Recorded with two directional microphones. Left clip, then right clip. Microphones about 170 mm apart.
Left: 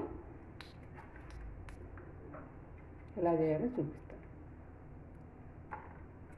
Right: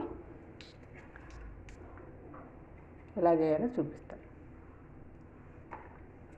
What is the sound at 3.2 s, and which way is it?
Speech, 15° right (ahead or behind).